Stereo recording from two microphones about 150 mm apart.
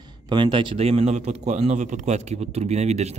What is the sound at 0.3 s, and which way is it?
A man's voice, 30° right (ahead or behind).